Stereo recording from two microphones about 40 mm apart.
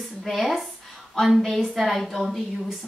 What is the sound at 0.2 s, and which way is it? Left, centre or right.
Speech, centre.